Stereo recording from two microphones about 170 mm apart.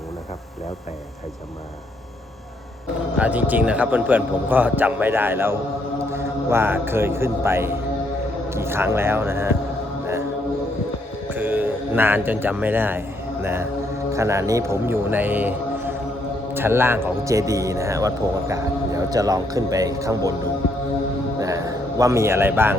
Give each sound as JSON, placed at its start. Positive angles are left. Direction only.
{"t": 3.2, "sound": "a man's voice", "side_deg": -10}
{"t": 11.3, "sound": "a man's voice", "side_deg": -10}
{"t": 21.4, "sound": "a sound", "side_deg": -20}